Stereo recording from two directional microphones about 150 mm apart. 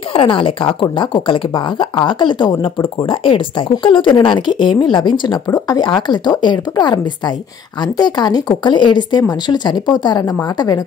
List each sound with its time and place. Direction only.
0.1 s speech: 35° left (ahead or behind)